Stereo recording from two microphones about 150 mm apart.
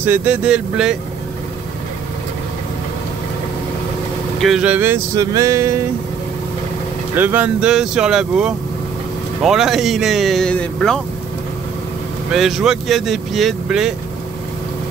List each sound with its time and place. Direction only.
0.0 s speech: 15° right (ahead or behind)
4.4 s speech: 5° right (ahead or behind); by 5.8 s 20° right (ahead or behind)
7.2 s speech: 15° right (ahead or behind); by 11.0 s 5° left (ahead or behind)
12.3 s speech: centre (ahead or behind)